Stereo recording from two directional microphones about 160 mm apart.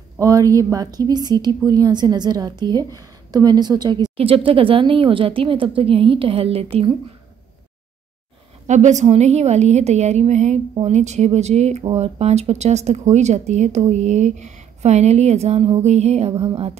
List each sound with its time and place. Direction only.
0.2 s a woman's voice: 20° right (ahead or behind); by 6.9 s 40° right (ahead or behind)
8.6 s a woman's voice: 50° right (ahead or behind)